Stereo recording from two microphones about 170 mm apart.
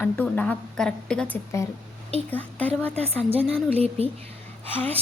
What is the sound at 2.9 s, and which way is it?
Speech, 35° right (ahead or behind).